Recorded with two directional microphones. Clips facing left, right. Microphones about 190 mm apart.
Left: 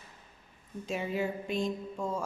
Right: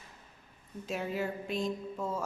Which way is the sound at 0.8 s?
Centre (ahead or behind).